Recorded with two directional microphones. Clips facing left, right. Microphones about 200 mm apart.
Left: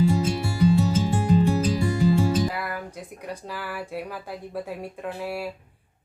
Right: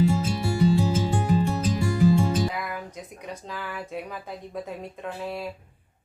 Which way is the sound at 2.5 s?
5° left (ahead or behind).